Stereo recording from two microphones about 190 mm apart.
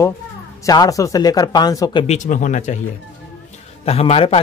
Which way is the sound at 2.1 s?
40° left (ahead or behind).